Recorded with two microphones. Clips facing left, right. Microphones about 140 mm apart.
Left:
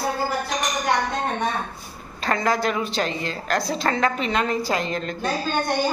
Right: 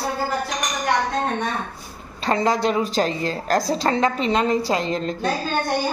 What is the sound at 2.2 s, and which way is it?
A woman's voice, 30° right (ahead or behind).